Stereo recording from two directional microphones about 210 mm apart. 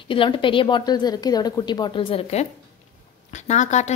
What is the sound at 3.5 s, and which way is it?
Speech, 35° left (ahead or behind).